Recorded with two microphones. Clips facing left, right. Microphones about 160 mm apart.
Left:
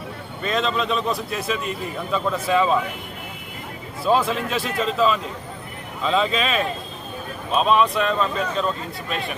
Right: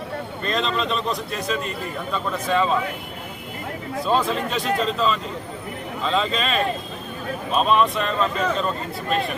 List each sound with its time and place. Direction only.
0.4 s speech: centre (ahead or behind)
4.0 s speech: 5° left (ahead or behind)